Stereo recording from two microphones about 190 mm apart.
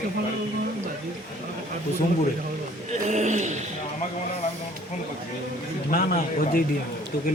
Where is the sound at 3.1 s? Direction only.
40° right (ahead or behind).